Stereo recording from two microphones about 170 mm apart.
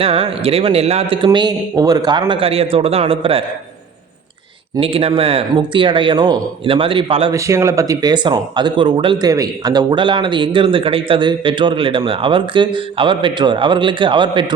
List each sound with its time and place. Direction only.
0.0 s speech: 35° right (ahead or behind)
4.8 s speech: 35° right (ahead or behind)
7.3 s speech: 15° right (ahead or behind)